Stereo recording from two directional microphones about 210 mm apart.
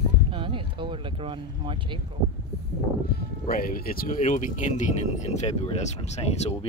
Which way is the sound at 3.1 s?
50° left (ahead or behind).